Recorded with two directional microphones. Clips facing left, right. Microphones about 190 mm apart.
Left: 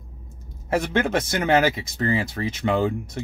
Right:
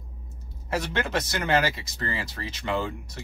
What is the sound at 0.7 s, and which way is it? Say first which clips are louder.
Speech: left 6 dB; 50° left (ahead or behind).